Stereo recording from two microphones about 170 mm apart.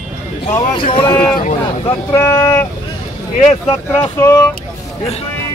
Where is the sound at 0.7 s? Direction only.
30° left (ahead or behind).